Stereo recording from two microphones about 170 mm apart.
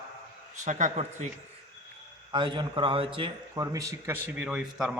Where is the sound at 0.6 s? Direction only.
45° right (ahead or behind).